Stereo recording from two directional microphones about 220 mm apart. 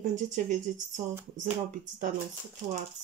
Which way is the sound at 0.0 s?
35° right (ahead or behind).